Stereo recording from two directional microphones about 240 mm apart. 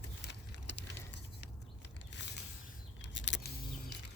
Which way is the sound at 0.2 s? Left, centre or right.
Left.